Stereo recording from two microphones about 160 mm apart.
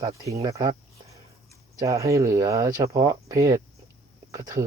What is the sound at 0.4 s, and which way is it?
Speech, 25° right (ahead or behind).